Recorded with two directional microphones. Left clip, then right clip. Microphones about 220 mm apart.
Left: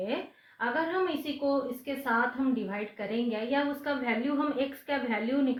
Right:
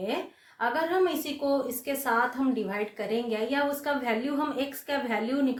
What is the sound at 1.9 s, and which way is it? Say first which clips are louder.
A woman's voice: right 3 dB; 35° right (ahead or behind).